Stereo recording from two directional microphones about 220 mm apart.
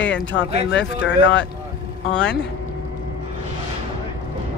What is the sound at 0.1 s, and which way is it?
Speech, 55° left (ahead or behind).